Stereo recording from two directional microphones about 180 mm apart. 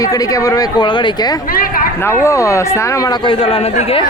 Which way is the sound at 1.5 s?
55° left (ahead or behind).